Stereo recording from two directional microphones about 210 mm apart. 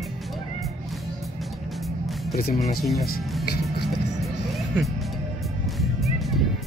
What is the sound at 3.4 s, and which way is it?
Music, 50° left (ahead or behind).